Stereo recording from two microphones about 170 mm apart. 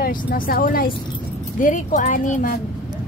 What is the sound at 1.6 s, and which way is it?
Speech, 50° left (ahead or behind).